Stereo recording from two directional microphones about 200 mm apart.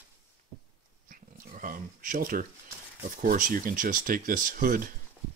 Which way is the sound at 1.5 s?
45° right (ahead or behind).